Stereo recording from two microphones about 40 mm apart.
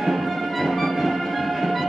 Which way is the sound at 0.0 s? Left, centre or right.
Centre.